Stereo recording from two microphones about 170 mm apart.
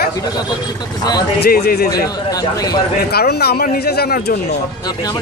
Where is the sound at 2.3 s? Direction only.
20° left (ahead or behind).